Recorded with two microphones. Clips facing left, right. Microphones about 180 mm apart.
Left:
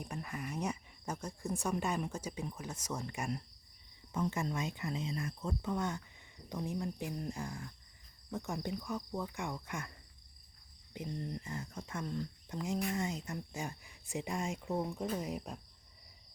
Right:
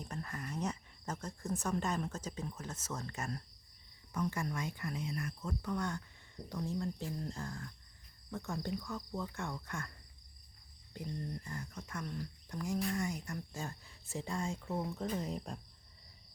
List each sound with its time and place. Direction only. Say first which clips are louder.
0.0 s speech: left 2 dB; 10° left (ahead or behind)
10.9 s speech: left 1 dB; 20° left (ahead or behind)